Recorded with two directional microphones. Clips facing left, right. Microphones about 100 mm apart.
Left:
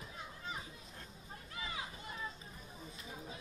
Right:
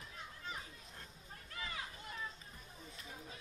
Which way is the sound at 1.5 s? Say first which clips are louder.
Left 1 dB; 15° left (ahead or behind).